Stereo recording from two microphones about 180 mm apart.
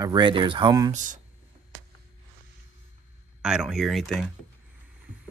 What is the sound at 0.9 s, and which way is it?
Speech, 45° right (ahead or behind).